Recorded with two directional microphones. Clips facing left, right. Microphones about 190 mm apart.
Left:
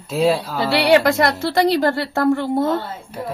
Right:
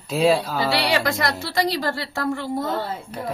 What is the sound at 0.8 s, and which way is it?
A woman's voice, 60° left (ahead or behind).